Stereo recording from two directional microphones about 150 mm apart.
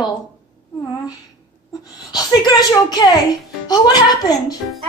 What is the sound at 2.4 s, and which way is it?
A woman's voice, 25° left (ahead or behind).